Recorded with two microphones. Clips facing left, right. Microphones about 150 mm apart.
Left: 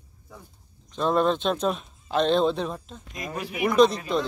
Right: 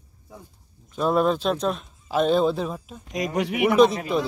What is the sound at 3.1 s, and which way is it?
Speech, 75° right (ahead or behind).